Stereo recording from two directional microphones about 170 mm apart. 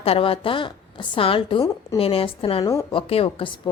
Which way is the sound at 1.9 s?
35° left (ahead or behind).